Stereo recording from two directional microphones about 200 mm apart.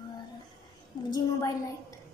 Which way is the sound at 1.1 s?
15° left (ahead or behind).